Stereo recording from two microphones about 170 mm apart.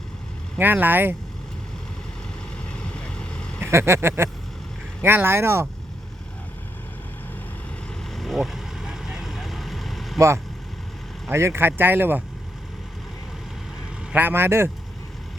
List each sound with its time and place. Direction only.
0.6 s speech: 10° right (ahead or behind)
2.9 s vehicle: 5° left (ahead or behind)
3.6 s speech: 15° right (ahead or behind)
8.1 s vehicle: centre (ahead or behind)
10.2 s speech: 15° right (ahead or behind)
14.1 s speech: 10° right (ahead or behind)